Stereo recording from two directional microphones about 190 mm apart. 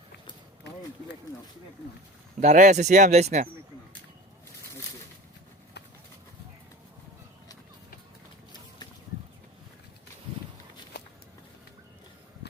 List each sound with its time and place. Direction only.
2.4 s speech: 40° right (ahead or behind)
10.9 s walk: 60° left (ahead or behind)